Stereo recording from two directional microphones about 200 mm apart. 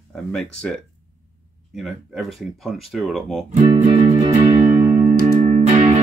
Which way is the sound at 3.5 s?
35° right (ahead or behind).